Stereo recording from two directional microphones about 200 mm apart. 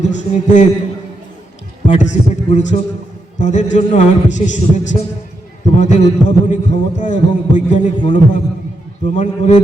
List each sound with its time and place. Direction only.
0.0 s a man's voice: 35° left (ahead or behind)
1.9 s a man's voice: 35° left (ahead or behind)